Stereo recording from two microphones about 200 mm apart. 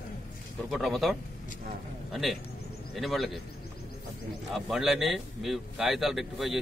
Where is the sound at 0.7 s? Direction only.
Centre (ahead or behind).